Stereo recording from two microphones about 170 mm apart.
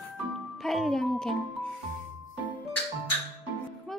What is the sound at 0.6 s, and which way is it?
Speech, centre (ahead or behind).